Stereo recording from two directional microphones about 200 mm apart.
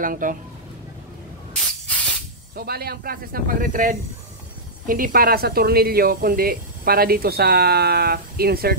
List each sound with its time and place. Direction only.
0.0 s speech: 40° right (ahead or behind)
2.5 s speech: 50° right (ahead or behind)